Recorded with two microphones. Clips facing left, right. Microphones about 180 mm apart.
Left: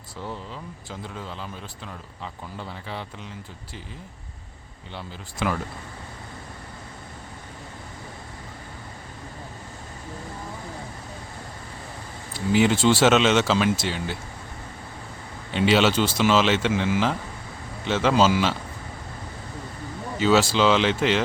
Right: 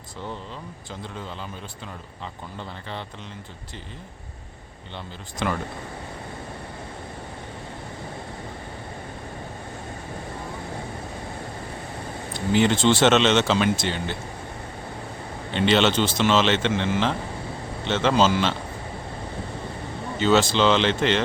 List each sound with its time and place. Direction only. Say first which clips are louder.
5.4 s speech: even; 5° left (ahead or behind)
12.3 s speech: even; 5° left (ahead or behind)
15.5 s speech: even; 5° left (ahead or behind)
20.1 s speech: even; 5° left (ahead or behind)